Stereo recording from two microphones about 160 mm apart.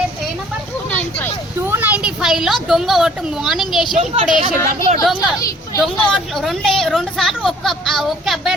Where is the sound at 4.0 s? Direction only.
35° right (ahead or behind).